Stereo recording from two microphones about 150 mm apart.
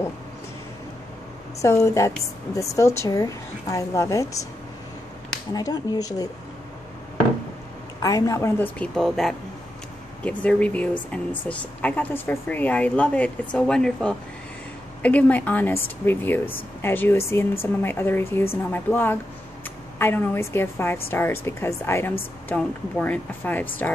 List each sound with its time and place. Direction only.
1.6 s a woman's voice: 20° left (ahead or behind)
5.5 s a woman's voice: 25° left (ahead or behind)
8.0 s speech: 25° left (ahead or behind)